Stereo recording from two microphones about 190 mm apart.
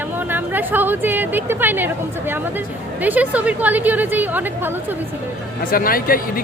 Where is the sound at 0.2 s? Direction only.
10° right (ahead or behind).